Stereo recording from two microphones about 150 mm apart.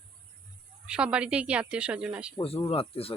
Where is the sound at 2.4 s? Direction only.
40° left (ahead or behind).